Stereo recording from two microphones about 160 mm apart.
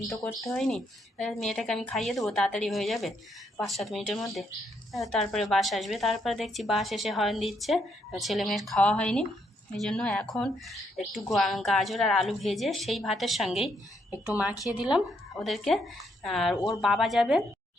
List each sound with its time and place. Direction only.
0.3 s a woman's voice: centre (ahead or behind)